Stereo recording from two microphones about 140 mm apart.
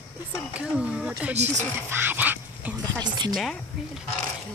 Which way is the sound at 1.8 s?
15° right (ahead or behind).